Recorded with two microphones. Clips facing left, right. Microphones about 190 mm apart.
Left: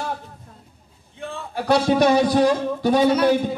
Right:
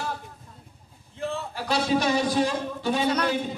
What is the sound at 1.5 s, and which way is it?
Speech, 65° left (ahead or behind).